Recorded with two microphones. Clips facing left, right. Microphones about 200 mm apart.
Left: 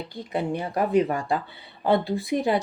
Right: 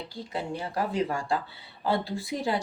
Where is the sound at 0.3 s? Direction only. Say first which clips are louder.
Left 6 dB; 20° left (ahead or behind).